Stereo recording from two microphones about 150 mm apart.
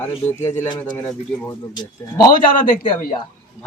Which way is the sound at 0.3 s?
15° left (ahead or behind).